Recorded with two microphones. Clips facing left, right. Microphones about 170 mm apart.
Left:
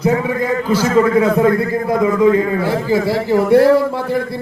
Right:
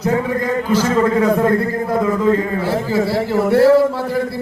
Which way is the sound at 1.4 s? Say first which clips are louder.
Left 2 dB; 10° left (ahead or behind).